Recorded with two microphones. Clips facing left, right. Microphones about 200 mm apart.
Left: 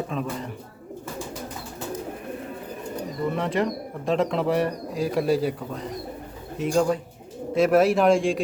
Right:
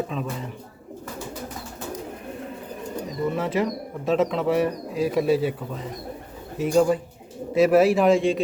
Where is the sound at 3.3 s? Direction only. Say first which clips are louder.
Even; 5° right (ahead or behind).